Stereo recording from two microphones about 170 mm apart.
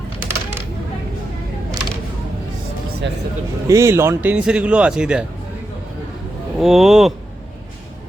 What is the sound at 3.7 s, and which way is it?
Speech, 15° right (ahead or behind).